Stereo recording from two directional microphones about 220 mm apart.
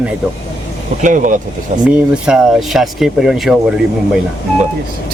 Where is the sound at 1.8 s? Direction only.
5° right (ahead or behind).